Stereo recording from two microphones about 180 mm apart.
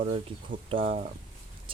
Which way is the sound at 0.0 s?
30° right (ahead or behind).